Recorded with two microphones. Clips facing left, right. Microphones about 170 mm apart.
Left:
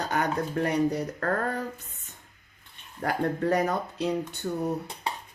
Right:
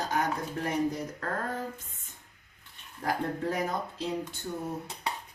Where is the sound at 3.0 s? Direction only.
65° left (ahead or behind).